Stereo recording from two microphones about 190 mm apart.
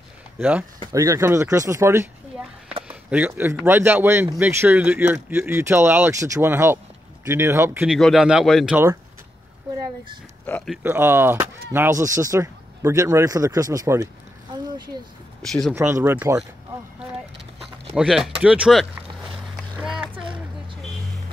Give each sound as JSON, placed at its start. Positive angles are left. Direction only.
{"t": 0.4, "sound": "a man's voice", "side_deg": -10}
{"t": 10.4, "sound": "speech", "side_deg": 5}
{"t": 10.8, "sound": "a man's voice", "side_deg": -10}
{"t": 15.7, "sound": "a man's voice", "side_deg": -10}
{"t": 17.9, "sound": "speech", "side_deg": 0}
{"t": 19.3, "sound": "a sound", "side_deg": 0}